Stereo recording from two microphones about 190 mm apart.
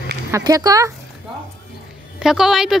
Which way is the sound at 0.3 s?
20° right (ahead or behind).